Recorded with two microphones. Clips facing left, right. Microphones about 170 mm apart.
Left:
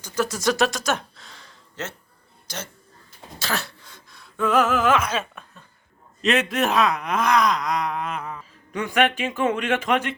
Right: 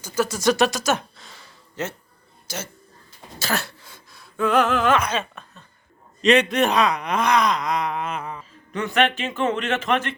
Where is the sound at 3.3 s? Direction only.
Centre (ahead or behind).